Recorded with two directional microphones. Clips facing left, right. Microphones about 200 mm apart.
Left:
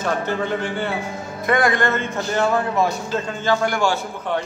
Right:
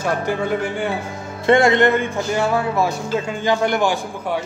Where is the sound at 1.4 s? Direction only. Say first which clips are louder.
Right 5 dB; 25° right (ahead or behind).